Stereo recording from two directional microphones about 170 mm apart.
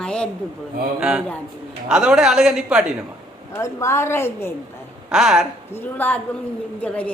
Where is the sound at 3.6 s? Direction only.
15° left (ahead or behind).